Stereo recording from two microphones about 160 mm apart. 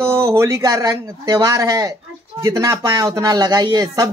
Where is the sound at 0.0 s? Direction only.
15° right (ahead or behind).